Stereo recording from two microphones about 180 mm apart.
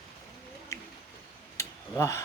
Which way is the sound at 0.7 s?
15° left (ahead or behind).